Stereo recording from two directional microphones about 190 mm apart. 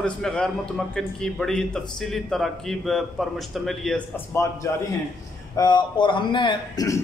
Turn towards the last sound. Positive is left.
turn(degrees=15)  # may be behind; listen again after turning